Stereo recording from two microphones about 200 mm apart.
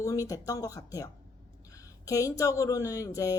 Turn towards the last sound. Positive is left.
turn(degrees=15)  # may be behind; listen again after turning